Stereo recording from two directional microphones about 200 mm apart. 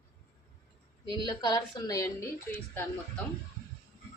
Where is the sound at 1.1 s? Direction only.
20° left (ahead or behind).